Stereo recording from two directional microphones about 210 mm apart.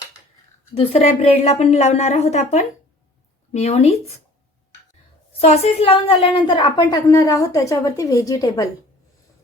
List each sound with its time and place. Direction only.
0.7 s a woman's voice: 30° left (ahead or behind)
5.4 s a woman's voice: 30° left (ahead or behind)